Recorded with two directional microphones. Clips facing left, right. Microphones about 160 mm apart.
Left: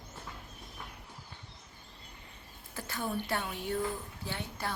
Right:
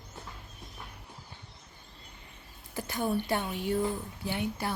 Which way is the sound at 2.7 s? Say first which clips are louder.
Right 5 dB; 15° right (ahead or behind).